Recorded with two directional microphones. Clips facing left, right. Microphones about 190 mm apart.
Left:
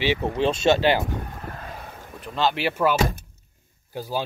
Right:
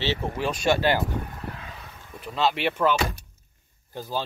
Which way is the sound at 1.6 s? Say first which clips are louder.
Left 5 dB; 50° left (ahead or behind).